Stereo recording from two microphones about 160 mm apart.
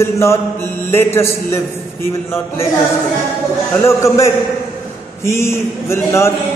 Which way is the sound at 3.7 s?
15° left (ahead or behind).